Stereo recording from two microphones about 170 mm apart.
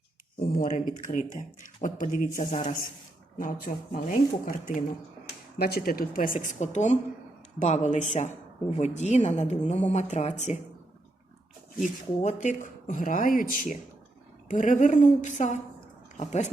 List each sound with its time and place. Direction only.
0.6 s speech: 50° left (ahead or behind)
5.5 s speech: 65° left (ahead or behind); by 10.6 s 40° left (ahead or behind)
12.2 s speech: 45° left (ahead or behind)